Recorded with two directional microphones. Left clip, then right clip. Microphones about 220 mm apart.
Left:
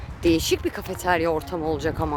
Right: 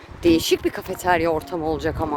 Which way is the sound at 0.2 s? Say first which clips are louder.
Right 3 dB; 5° right (ahead or behind).